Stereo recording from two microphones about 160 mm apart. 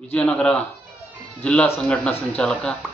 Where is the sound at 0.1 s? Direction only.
10° left (ahead or behind).